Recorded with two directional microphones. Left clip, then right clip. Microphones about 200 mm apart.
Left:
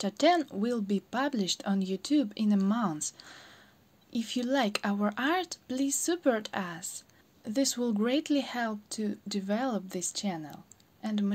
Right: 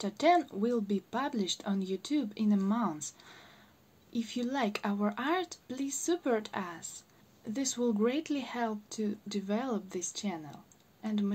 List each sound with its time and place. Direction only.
0.0 s speech: 40° left (ahead or behind)